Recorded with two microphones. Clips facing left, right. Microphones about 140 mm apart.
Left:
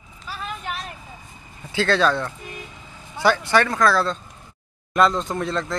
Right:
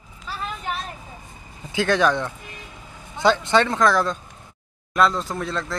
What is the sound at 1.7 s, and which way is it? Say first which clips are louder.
Speech: even; 15° right (ahead or behind).